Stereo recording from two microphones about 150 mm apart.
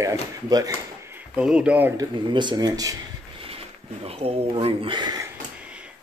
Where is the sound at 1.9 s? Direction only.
30° right (ahead or behind).